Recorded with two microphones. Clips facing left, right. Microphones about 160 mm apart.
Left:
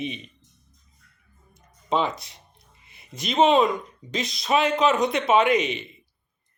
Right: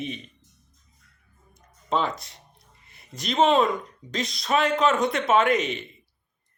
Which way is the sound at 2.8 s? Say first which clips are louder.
Even; centre (ahead or behind).